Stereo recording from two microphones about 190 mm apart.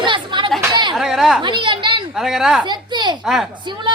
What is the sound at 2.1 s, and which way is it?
Speech, centre (ahead or behind).